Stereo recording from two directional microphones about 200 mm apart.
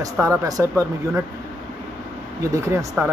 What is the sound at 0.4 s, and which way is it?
Speech, 15° right (ahead or behind).